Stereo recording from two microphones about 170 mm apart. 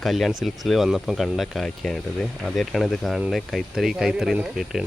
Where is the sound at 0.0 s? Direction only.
Centre (ahead or behind).